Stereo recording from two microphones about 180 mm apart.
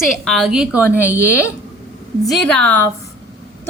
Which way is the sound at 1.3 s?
15° left (ahead or behind).